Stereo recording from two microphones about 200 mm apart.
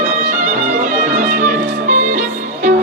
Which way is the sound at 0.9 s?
40° right (ahead or behind).